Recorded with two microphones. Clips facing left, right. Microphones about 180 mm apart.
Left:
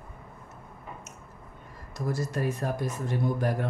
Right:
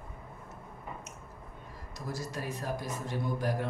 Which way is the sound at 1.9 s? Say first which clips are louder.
Left 8 dB; 50° left (ahead or behind).